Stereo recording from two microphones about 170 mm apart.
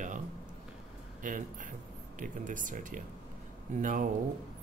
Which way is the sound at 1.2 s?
50° right (ahead or behind).